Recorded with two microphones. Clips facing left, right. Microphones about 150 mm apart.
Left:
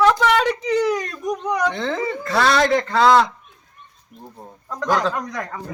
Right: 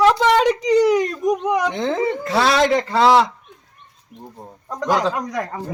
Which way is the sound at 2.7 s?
10° right (ahead or behind).